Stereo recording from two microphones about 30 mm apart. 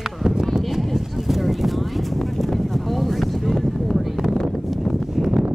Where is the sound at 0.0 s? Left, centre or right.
Centre.